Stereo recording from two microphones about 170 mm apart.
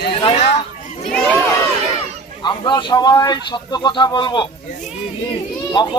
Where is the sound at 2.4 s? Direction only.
25° left (ahead or behind).